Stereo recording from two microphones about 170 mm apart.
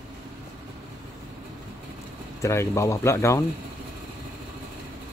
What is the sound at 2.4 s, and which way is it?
Speech, 15° left (ahead or behind).